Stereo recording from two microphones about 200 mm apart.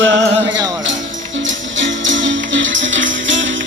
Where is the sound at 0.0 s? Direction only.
70° right (ahead or behind).